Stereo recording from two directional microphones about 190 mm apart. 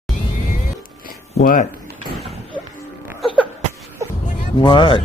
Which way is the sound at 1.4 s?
45° left (ahead or behind).